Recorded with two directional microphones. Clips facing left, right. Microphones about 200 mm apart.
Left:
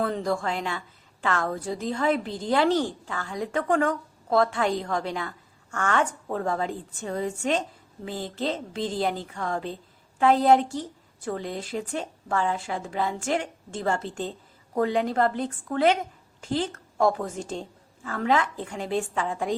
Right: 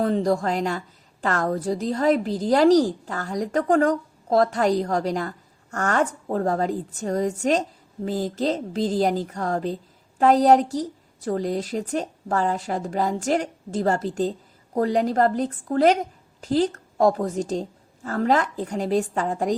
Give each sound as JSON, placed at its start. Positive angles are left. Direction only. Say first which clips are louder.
{"t": 0.0, "sound": "a woman's voice", "louder": "right 5 dB", "side_deg": -35}